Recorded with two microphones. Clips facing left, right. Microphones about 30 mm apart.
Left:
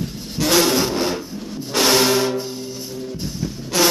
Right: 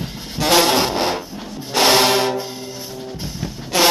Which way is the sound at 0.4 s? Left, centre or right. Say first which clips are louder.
Right 2 dB; right.